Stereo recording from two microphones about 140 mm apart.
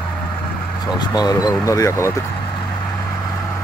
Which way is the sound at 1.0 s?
30° left (ahead or behind).